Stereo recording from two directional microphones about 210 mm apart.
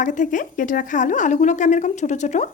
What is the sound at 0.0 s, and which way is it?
Speech, 40° left (ahead or behind).